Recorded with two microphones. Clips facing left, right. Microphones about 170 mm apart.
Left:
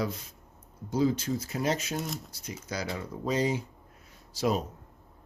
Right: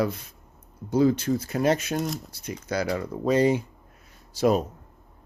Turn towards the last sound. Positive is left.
turn(degrees=-55)  # may be behind; listen again after turning